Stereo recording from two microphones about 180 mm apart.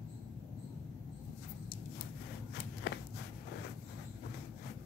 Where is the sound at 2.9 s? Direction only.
65° left (ahead or behind).